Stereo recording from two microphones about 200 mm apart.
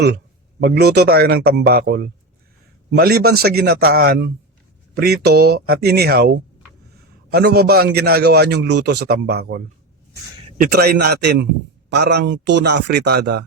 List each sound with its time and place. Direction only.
0.6 s a man's voice: 50° right (ahead or behind)